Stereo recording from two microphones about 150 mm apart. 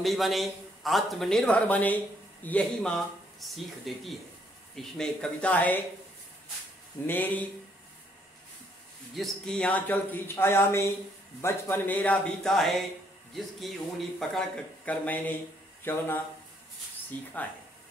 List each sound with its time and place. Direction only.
0.0 s a man's voice: centre (ahead or behind)
7.1 s speech: 10° left (ahead or behind)
9.1 s a man's voice: centre (ahead or behind)